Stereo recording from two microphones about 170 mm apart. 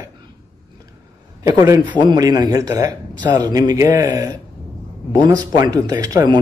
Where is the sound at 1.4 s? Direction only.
20° right (ahead or behind).